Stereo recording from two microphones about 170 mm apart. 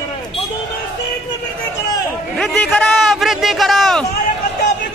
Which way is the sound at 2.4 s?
Centre (ahead or behind).